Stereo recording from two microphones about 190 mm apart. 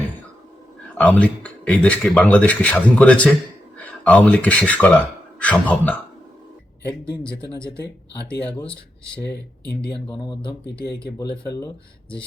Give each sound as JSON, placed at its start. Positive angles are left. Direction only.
{"t": 0.9, "sound": "speech", "side_deg": 5}
{"t": 7.2, "sound": "speech", "side_deg": 5}
{"t": 9.2, "sound": "speech", "side_deg": 65}
{"t": 10.1, "sound": "speech", "side_deg": 25}